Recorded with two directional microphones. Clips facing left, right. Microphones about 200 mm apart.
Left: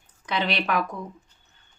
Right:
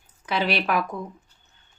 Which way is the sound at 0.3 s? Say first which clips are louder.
Right 2 dB; 5° right (ahead or behind).